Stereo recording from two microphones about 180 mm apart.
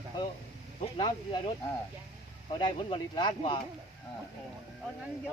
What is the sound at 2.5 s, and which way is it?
Speech, 25° left (ahead or behind).